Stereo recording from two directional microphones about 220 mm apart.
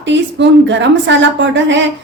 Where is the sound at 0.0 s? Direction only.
55° right (ahead or behind).